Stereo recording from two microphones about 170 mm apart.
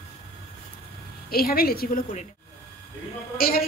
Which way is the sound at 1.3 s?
60° left (ahead or behind).